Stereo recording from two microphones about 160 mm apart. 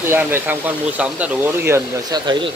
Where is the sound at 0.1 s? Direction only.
15° right (ahead or behind).